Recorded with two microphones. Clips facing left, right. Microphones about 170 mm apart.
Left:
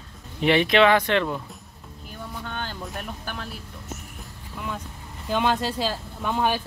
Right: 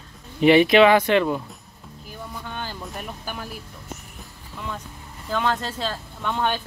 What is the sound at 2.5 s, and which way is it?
Vehicle, 5° right (ahead or behind).